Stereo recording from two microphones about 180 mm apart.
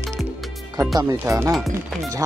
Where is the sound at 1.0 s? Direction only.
15° right (ahead or behind).